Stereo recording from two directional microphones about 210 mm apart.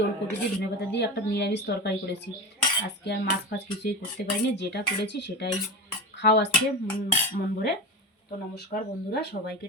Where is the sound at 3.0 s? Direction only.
55° left (ahead or behind).